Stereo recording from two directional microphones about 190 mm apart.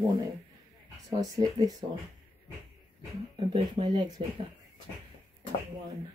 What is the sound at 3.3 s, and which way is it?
Speech, 25° right (ahead or behind).